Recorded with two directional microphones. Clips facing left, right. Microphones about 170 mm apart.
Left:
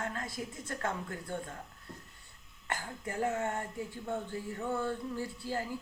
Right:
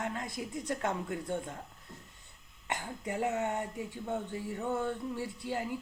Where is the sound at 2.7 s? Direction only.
20° right (ahead or behind).